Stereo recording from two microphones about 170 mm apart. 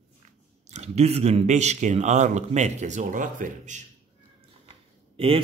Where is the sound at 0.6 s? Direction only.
40° right (ahead or behind).